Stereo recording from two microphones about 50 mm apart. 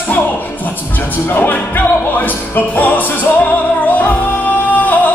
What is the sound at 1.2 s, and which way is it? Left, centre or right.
Music, left.